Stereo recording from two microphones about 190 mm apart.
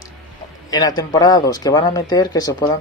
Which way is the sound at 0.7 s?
20° left (ahead or behind).